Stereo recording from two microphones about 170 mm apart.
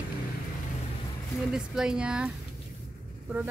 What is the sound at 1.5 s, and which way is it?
Speech, 5° right (ahead or behind).